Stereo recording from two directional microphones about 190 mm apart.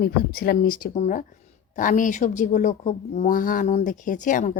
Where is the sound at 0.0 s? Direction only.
55° left (ahead or behind).